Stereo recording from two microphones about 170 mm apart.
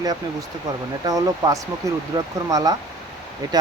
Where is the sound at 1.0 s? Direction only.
20° right (ahead or behind).